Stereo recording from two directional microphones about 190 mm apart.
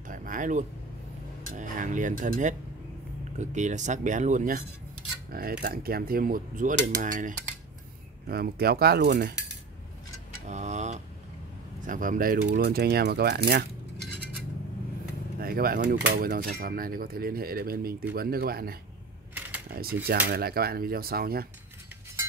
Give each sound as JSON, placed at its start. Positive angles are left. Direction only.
{"t": 0.1, "sound": "a sound", "side_deg": -45}
{"t": 1.6, "sound": "speech", "side_deg": -40}
{"t": 5.3, "sound": "mechanisms", "side_deg": -50}
{"t": 8.3, "sound": "speech", "side_deg": -55}
{"t": 10.5, "sound": "tick-tock", "side_deg": -40}
{"t": 11.8, "sound": "mechanisms", "side_deg": -45}
{"t": 15.3, "sound": "speech", "side_deg": -50}
{"t": 16.2, "sound": "mechanisms", "side_deg": -50}
{"t": 19.3, "sound": "camera", "side_deg": -10}
{"t": 19.7, "sound": "mechanisms", "side_deg": -50}